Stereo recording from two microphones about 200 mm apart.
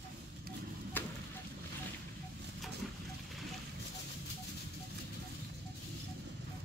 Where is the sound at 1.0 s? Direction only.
10° left (ahead or behind).